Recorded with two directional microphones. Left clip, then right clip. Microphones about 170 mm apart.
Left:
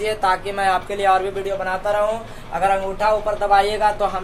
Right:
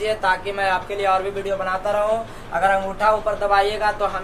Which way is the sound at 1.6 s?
30° left (ahead or behind).